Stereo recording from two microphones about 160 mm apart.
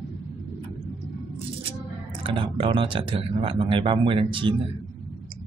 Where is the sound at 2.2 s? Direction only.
35° right (ahead or behind).